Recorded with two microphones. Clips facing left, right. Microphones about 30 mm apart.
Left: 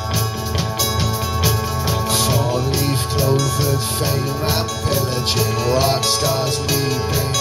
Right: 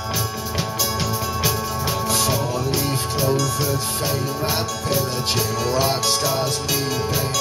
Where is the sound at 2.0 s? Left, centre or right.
Left.